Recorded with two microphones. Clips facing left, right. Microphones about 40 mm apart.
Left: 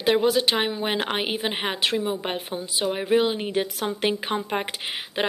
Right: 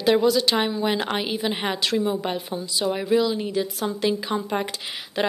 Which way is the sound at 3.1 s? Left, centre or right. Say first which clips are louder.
Left 1 dB; left.